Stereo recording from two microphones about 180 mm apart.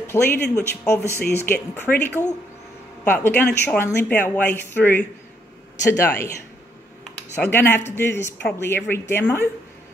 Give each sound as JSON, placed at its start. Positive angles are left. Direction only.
{"t": 0.0, "sound": "speech", "side_deg": 15}
{"t": 7.4, "sound": "speech", "side_deg": 10}